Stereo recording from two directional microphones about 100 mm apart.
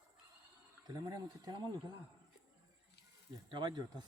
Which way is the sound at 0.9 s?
40° right (ahead or behind).